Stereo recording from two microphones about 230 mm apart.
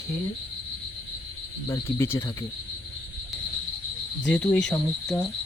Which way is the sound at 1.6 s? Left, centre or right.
Centre.